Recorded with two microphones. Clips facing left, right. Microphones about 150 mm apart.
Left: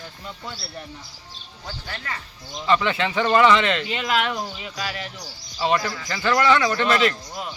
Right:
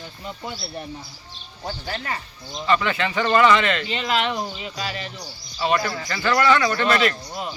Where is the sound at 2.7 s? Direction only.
20° left (ahead or behind).